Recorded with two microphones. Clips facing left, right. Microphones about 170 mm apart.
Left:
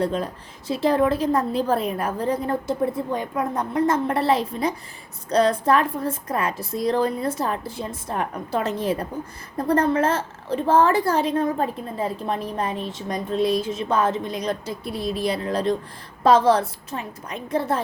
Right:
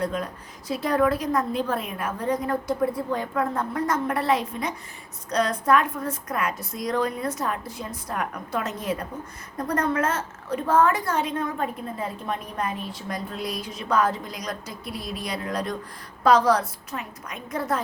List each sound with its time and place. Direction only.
0.0 s a woman's voice: 30° left (ahead or behind)